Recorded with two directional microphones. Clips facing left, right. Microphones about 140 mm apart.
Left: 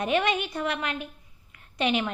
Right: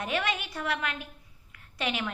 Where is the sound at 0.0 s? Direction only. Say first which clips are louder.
Left 6 dB; 20° left (ahead or behind).